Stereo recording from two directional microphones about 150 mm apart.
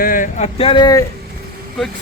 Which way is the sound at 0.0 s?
65° left (ahead or behind).